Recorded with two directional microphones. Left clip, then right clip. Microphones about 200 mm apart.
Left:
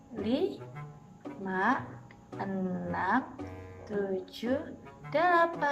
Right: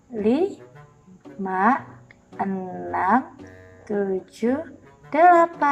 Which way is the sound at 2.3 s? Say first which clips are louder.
Right 10 dB; centre (ahead or behind).